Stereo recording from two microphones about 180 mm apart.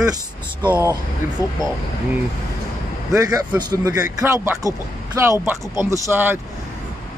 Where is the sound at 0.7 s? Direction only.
15° right (ahead or behind).